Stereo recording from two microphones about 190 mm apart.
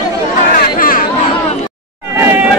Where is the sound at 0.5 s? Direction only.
50° left (ahead or behind).